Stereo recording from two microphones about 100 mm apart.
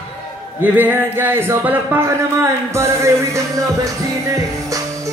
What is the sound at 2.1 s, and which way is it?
Music, 30° right (ahead or behind).